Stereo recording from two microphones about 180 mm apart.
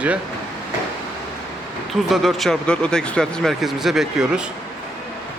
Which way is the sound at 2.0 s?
Centre (ahead or behind).